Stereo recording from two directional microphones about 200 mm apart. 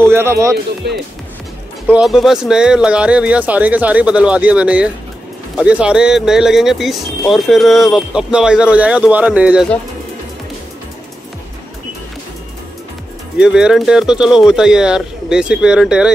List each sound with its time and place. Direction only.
0.0 s speech: 10° right (ahead or behind)
0.8 s speech: 55° right (ahead or behind)
1.9 s speech: 5° right (ahead or behind)
13.4 s speech: 5° right (ahead or behind)